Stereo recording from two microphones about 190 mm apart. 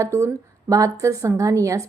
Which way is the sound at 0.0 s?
15° right (ahead or behind).